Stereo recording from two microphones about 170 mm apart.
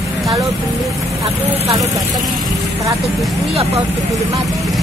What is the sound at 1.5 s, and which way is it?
Speech, 20° right (ahead or behind).